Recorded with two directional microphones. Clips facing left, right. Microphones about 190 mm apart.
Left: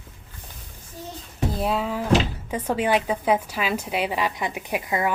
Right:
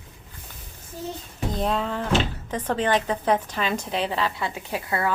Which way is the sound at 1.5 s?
5° left (ahead or behind).